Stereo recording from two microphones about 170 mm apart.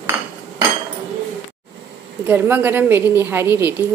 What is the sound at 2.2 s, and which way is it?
A woman's voice, 10° right (ahead or behind).